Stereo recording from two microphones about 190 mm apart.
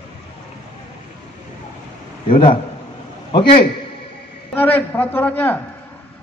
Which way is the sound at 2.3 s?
25° left (ahead or behind).